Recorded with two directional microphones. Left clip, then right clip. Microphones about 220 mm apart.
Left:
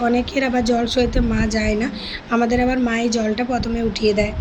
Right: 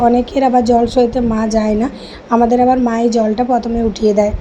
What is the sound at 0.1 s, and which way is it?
A woman's voice, 20° right (ahead or behind).